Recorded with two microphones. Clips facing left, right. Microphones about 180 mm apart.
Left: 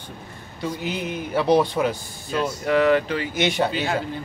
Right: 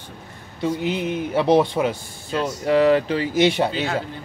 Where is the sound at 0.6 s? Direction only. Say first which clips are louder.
Right 5 dB; 25° right (ahead or behind).